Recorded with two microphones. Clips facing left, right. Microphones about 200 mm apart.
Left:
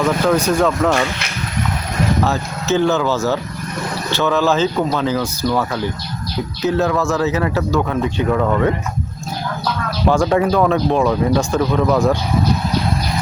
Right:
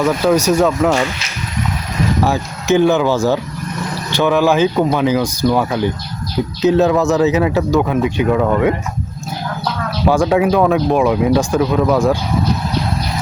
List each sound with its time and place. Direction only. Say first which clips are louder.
0.5 s speech: right 2 dB; 10° right (ahead or behind)
2.2 s speech: right 2 dB; 15° right (ahead or behind)
10.1 s speech: right 2 dB; 5° right (ahead or behind)